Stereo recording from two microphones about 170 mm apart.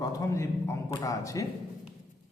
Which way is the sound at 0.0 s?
20° left (ahead or behind).